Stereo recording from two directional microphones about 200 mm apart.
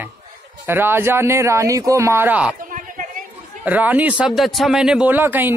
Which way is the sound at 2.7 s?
40° right (ahead or behind).